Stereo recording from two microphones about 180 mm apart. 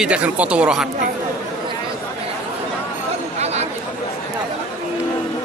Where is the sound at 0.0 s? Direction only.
5° right (ahead or behind).